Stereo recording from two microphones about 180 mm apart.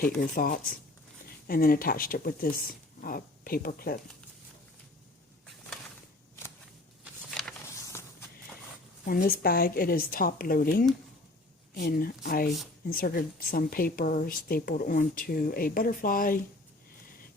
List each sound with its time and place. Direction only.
0.2 s speech: 55° left (ahead or behind)
7.0 s a sound: centre (ahead or behind)
7.9 s walk: 15° left (ahead or behind)
9.0 s speech: 55° left (ahead or behind)